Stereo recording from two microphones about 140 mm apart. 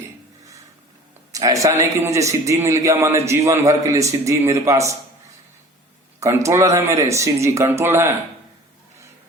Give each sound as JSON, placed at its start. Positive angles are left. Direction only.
{"t": 1.3, "sound": "a man's voice", "side_deg": -25}
{"t": 6.1, "sound": "a man's voice", "side_deg": -20}